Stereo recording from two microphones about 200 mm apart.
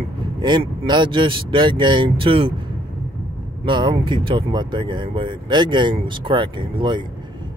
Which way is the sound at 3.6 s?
25° right (ahead or behind).